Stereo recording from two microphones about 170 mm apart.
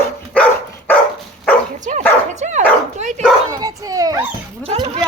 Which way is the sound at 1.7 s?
45° right (ahead or behind).